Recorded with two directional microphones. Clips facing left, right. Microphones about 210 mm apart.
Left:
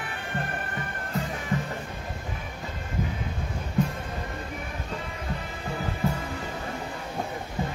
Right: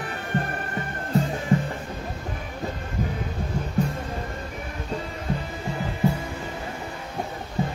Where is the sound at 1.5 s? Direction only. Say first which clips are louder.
Right 7 dB; 30° right (ahead or behind).